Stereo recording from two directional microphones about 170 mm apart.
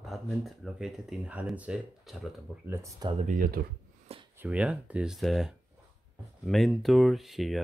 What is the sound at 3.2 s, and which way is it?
Speech, 55° right (ahead or behind).